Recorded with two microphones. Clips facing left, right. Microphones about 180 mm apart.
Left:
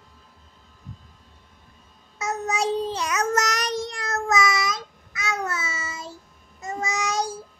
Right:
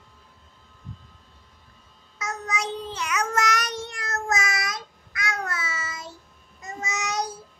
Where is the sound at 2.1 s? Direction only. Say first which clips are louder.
Left 5 dB; 30° left (ahead or behind).